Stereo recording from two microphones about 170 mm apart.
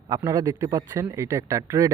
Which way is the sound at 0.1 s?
20° right (ahead or behind).